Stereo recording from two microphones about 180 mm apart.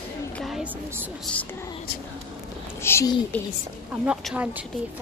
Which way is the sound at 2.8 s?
15° left (ahead or behind).